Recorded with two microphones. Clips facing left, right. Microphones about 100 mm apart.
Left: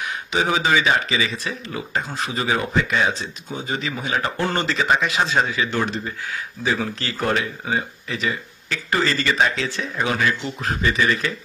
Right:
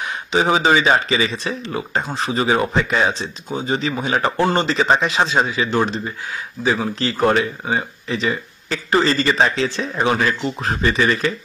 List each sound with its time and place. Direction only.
0.3 s speech: 30° right (ahead or behind)
4.5 s speech: 20° right (ahead or behind)
4.7 s speech: 30° right (ahead or behind)
5.3 s speech: 20° right (ahead or behind); by 11.3 s 35° right (ahead or behind)